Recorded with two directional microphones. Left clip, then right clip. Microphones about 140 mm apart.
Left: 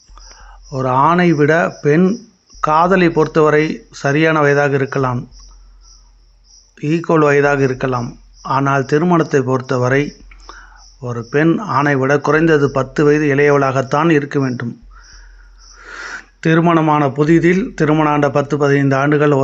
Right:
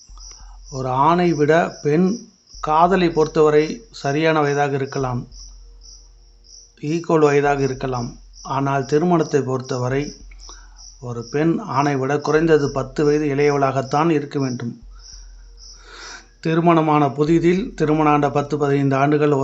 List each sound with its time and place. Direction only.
0.2 s a man's voice: 25° left (ahead or behind)
6.7 s a man's voice: 25° left (ahead or behind)
15.8 s a sound: 20° left (ahead or behind)
16.6 s a man's voice: 20° left (ahead or behind)